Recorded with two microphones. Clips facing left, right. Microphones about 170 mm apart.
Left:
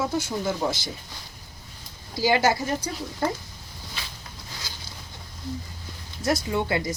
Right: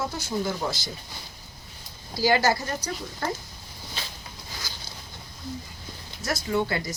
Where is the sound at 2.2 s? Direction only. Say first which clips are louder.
Left 1 dB; 20° left (ahead or behind).